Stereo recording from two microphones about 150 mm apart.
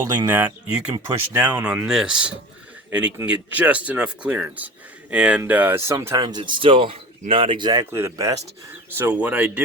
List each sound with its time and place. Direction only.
0.0 s speech: 20° right (ahead or behind)
1.9 s speech: 5° right (ahead or behind); by 6.2 s 20° right (ahead or behind)
6.2 s speech: 30° right (ahead or behind)
7.9 s speech: 15° right (ahead or behind)